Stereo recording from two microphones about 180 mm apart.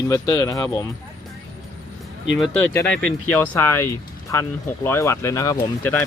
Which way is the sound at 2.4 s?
5° left (ahead or behind).